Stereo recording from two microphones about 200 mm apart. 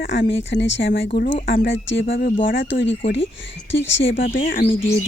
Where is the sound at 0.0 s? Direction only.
65° left (ahead or behind).